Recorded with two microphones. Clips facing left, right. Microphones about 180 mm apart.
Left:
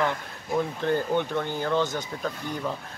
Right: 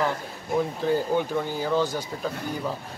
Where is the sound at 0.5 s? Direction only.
5° right (ahead or behind).